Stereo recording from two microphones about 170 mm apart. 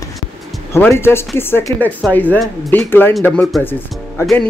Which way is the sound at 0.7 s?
15° left (ahead or behind).